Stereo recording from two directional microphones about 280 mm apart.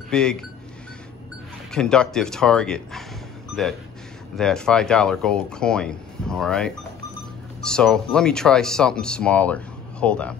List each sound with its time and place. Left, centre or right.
0.1 s speech: centre
1.7 s speech: centre
4.4 s speech: centre